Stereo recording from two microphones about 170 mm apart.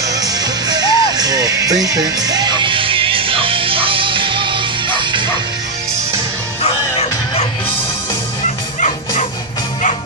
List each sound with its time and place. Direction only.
0.1 s music: 20° right (ahead or behind)
6.6 s music: 35° left (ahead or behind)